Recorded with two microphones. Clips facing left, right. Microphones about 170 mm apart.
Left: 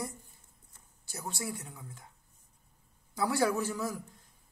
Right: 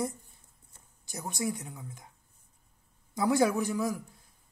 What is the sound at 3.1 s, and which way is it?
Speech, 20° right (ahead or behind).